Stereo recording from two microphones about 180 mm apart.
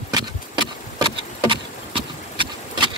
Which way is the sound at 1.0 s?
30° right (ahead or behind).